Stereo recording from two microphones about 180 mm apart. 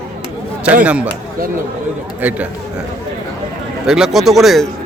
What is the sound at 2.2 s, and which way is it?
Speech, 10° right (ahead or behind).